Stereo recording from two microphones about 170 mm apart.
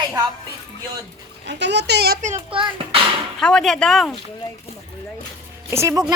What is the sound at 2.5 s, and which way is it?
Speech, 30° right (ahead or behind).